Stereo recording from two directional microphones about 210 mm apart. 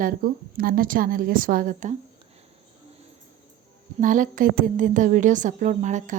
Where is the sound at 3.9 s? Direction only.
40° right (ahead or behind).